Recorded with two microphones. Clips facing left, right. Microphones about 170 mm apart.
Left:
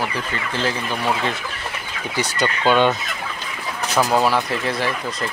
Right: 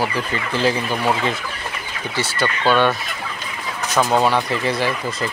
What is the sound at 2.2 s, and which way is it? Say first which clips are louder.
Speech: even; 15° left (ahead or behind).